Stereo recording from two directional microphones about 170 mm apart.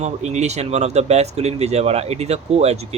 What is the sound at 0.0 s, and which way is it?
Speech, 40° right (ahead or behind).